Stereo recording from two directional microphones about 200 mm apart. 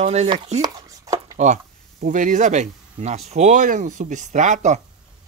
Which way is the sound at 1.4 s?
35° right (ahead or behind).